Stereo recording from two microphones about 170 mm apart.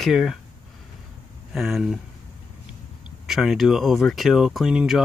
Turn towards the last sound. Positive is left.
turn(degrees=0)  # may be behind; listen again after turning